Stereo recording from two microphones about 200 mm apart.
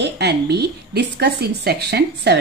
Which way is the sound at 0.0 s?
55° right (ahead or behind).